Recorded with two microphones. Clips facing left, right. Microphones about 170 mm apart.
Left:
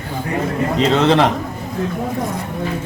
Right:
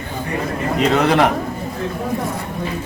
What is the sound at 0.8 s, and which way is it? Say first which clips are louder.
Speech: left 1 dB; 25° left (ahead or behind).